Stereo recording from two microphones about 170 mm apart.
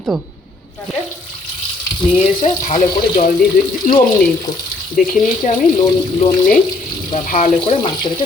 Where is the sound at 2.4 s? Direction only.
50° left (ahead or behind).